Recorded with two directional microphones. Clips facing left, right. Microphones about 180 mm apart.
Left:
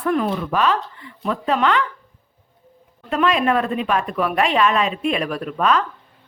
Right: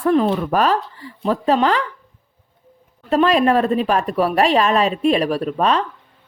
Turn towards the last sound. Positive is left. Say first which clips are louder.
# right 2 dB
turn(degrees=-30)  # may be behind; listen again after turning